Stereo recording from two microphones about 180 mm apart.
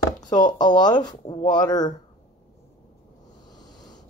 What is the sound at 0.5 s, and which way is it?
Speech, 25° left (ahead or behind).